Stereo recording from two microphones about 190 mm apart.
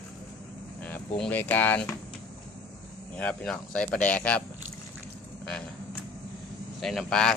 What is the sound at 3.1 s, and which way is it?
Speech, 5° left (ahead or behind).